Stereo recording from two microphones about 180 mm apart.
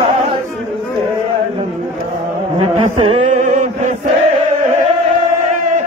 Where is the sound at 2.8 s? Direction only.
35° right (ahead or behind).